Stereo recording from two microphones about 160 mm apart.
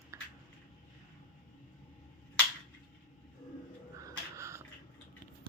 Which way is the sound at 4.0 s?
20° right (ahead or behind).